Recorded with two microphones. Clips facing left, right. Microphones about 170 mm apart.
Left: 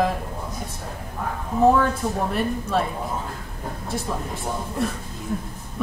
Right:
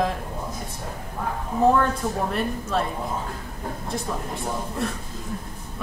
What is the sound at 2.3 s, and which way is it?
Speech, centre (ahead or behind).